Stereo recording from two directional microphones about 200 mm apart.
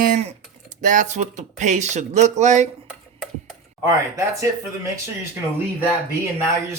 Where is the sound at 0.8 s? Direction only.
40° right (ahead or behind).